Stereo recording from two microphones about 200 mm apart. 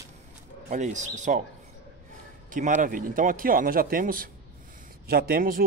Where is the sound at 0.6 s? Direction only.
35° right (ahead or behind).